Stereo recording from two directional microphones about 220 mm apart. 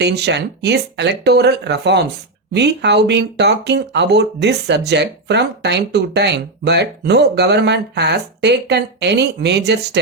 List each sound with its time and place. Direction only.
0.0 s speech: 50° right (ahead or behind)